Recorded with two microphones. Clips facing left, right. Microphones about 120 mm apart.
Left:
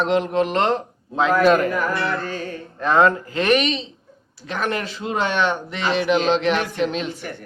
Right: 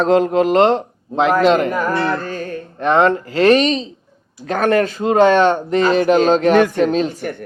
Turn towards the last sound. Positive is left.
turn(degrees=-40)  # may be behind; listen again after turning